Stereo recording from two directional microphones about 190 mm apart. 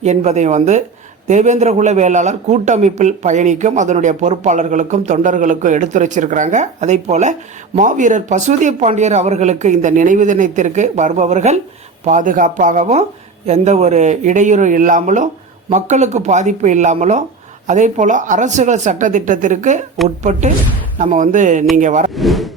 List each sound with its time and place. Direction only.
0.0 s a man's voice: 35° right (ahead or behind)
22.1 s speech: centre (ahead or behind)